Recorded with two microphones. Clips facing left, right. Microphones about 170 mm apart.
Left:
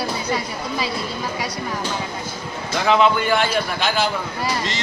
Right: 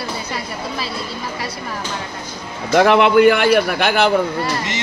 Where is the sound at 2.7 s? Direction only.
65° right (ahead or behind).